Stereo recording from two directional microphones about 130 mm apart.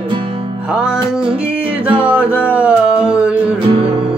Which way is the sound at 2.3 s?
10° right (ahead or behind).